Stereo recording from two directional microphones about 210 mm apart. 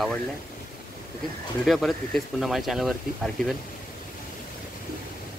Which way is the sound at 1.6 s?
Centre (ahead or behind).